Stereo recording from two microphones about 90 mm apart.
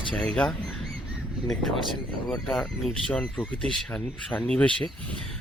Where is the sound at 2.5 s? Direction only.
5° left (ahead or behind).